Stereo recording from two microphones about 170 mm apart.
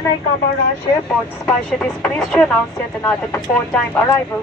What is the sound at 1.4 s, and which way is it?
Speech, 15° left (ahead or behind).